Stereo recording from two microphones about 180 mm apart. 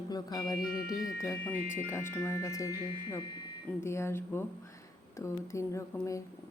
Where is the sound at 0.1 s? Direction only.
20° left (ahead or behind).